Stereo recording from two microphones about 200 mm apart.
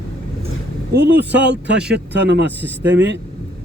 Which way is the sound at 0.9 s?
55° right (ahead or behind).